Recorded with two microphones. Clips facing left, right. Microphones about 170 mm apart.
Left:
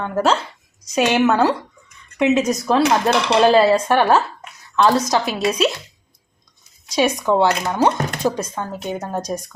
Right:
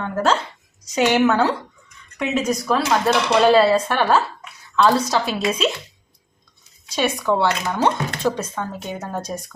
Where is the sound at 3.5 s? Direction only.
15° left (ahead or behind).